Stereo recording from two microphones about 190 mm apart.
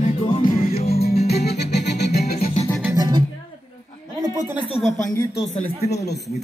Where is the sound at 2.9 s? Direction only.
20° right (ahead or behind).